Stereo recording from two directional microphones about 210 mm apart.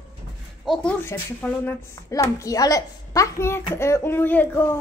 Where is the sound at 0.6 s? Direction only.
Centre (ahead or behind).